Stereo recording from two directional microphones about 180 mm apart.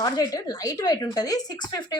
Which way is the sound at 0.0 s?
20° left (ahead or behind).